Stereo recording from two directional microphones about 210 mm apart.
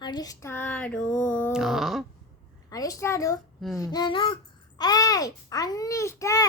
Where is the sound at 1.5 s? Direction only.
Centre (ahead or behind).